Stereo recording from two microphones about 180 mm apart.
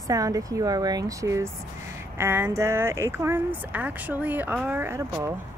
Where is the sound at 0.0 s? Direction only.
20° right (ahead or behind).